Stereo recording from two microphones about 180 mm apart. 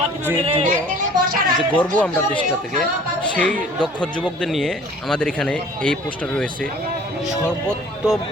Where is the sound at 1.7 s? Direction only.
10° left (ahead or behind).